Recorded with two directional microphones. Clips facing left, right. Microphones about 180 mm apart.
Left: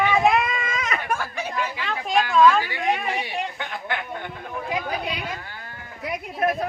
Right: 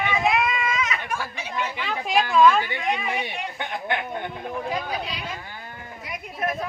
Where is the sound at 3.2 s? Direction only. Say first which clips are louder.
Left 2 dB; 20° right (ahead or behind).